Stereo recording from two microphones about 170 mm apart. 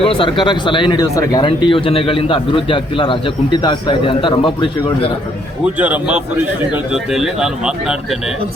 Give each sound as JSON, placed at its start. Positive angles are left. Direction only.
{"t": 0.0, "sound": "speech", "side_deg": 30}
{"t": 5.7, "sound": "speech", "side_deg": -10}